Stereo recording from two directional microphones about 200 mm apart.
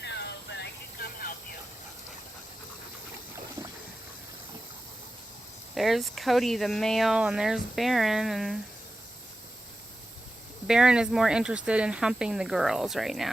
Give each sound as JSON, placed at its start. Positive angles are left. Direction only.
{"t": 0.0, "sound": "vehicle", "side_deg": 60}
{"t": 5.7, "sound": "speech", "side_deg": 0}
{"t": 10.7, "sound": "speech", "side_deg": -5}